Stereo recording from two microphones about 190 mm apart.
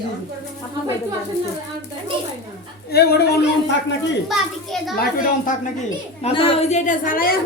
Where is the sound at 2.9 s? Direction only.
55° left (ahead or behind).